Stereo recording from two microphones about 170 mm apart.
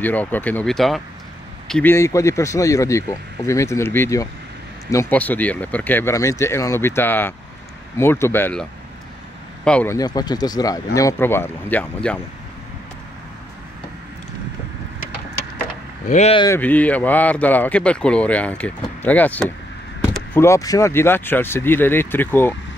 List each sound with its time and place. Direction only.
0.0 s speech: 10° left (ahead or behind)
9.7 s speech: 10° left (ahead or behind)
9.9 s speech: 25° left (ahead or behind); by 12.2 s 5° left (ahead or behind)
16.1 s speech: 40° left (ahead or behind)
16.5 s speech: 10° left (ahead or behind)